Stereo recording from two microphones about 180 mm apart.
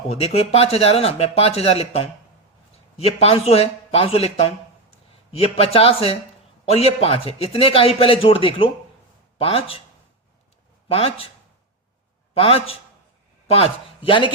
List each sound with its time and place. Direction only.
0.1 s speech: 35° left (ahead or behind)
10.8 s speech: 30° left (ahead or behind)
12.3 s a man's voice: 30° left (ahead or behind)